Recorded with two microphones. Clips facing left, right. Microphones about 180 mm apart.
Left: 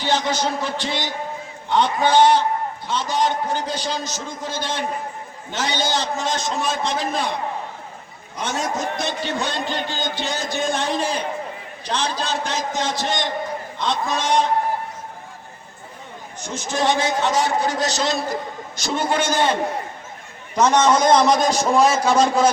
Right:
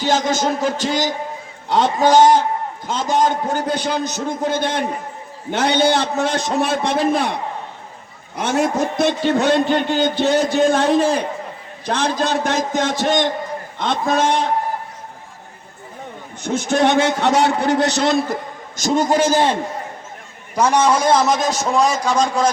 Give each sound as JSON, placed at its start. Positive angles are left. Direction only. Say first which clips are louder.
{"t": 0.0, "sound": "a man's voice", "louder": "right 4 dB", "side_deg": -45}
{"t": 8.4, "sound": "a man's voice", "louder": "right 7 dB", "side_deg": -60}
{"t": 16.4, "sound": "a man's voice", "louder": "right 7 dB", "side_deg": -60}
{"t": 18.8, "sound": "a man's voice", "louder": "right 6 dB", "side_deg": -45}
{"t": 20.6, "sound": "a man's voice", "louder": "even", "side_deg": -10}